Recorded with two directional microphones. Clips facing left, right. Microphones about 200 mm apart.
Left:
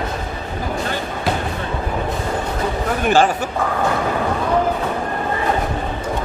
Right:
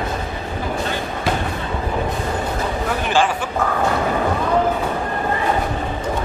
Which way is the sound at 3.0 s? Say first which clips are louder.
Left 4 dB; 45° left (ahead or behind).